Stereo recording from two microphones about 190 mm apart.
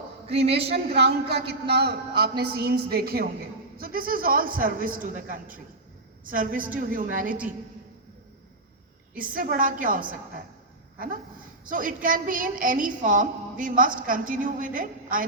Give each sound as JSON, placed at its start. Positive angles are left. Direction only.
{"t": 0.7, "sound": "a woman's voice", "side_deg": -60}
{"t": 9.1, "sound": "a woman's voice", "side_deg": -45}